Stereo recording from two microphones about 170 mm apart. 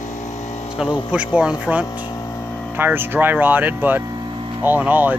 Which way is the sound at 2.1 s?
15° left (ahead or behind).